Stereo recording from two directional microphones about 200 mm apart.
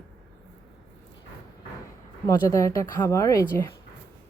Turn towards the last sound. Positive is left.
turn(degrees=15)  # may be behind; listen again after turning